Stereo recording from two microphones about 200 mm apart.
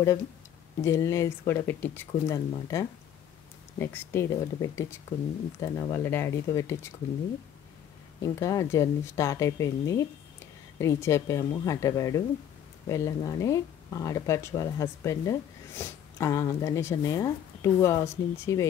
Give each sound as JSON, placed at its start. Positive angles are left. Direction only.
{"t": 0.8, "sound": "speech", "side_deg": 15}
{"t": 8.2, "sound": "speech", "side_deg": 15}